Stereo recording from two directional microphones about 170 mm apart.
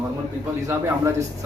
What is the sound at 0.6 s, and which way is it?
Speech, 15° right (ahead or behind).